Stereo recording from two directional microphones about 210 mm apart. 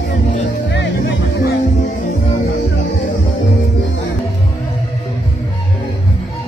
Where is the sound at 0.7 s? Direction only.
60° left (ahead or behind).